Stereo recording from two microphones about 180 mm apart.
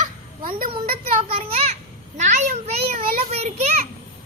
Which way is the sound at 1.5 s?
35° right (ahead or behind).